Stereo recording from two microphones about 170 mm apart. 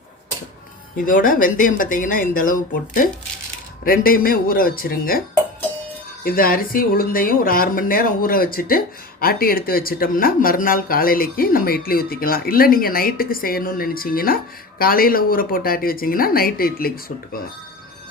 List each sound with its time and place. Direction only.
1.0 s speech: 55° left (ahead or behind)
6.2 s speech: 60° left (ahead or behind)